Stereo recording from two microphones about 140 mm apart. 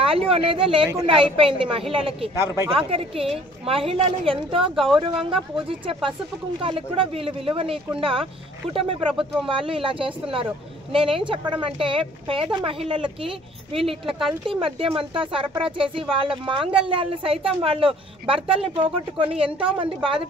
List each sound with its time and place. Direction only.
0.0 s speech: 40° right (ahead or behind)
2.4 s speech: 20° right (ahead or behind)
2.7 s speech: 45° right (ahead or behind)
4.7 s a woman's voice: centre (ahead or behind)
5.3 s speech: 40° right (ahead or behind)
9.5 s speech: 40° right (ahead or behind)
14.1 s a woman's voice: centre (ahead or behind)
14.6 s speech: 40° right (ahead or behind)